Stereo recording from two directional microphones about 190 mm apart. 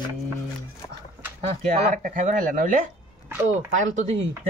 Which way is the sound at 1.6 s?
40° right (ahead or behind).